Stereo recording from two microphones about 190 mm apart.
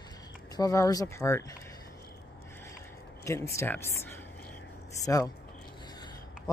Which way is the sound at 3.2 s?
15° left (ahead or behind).